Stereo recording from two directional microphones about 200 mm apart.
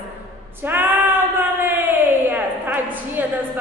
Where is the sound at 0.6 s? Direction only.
10° right (ahead or behind).